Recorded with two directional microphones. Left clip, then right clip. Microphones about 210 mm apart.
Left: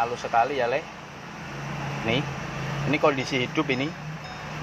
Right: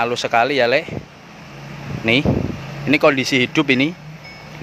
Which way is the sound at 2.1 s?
55° right (ahead or behind).